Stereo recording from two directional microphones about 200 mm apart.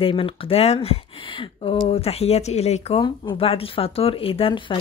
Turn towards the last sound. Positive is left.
turn(degrees=25)  # may be behind; listen again after turning